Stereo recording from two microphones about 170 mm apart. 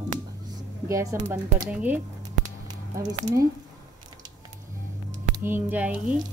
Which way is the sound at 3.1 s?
20° right (ahead or behind).